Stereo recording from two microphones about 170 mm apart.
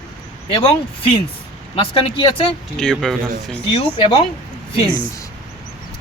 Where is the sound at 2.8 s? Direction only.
5° left (ahead or behind).